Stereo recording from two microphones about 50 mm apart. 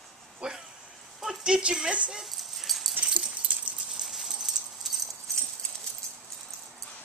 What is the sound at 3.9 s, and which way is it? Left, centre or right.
Clip-clop, centre.